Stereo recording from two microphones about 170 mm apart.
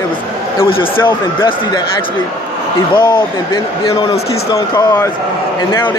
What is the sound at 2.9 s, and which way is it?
Speech, 30° left (ahead or behind).